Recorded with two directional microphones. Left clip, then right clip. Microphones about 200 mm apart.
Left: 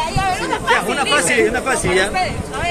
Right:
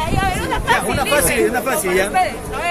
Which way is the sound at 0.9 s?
45° right (ahead or behind).